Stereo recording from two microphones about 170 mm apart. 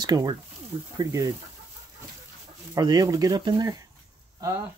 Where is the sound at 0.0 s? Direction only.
25° right (ahead or behind).